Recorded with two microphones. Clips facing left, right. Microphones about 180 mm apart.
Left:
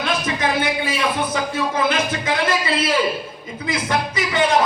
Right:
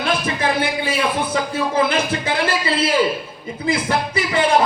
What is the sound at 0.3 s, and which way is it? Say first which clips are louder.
Music: right 1 dB; 30° right (ahead or behind).